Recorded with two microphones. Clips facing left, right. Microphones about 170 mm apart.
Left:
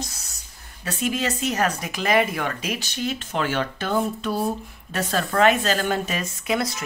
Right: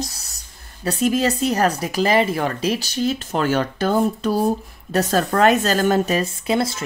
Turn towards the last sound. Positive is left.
turn(degrees=-30)  # may be behind; listen again after turning